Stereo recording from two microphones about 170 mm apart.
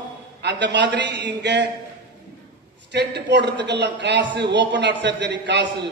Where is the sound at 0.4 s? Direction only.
85° right.